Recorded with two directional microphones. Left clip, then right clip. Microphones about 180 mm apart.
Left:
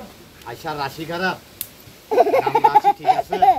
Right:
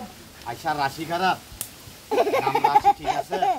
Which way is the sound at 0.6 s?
15° right (ahead or behind).